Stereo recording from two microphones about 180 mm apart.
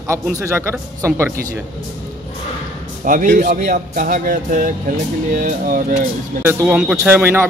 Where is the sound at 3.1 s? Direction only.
50° right (ahead or behind).